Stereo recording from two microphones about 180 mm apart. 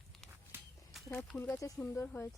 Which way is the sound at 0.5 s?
10° right (ahead or behind).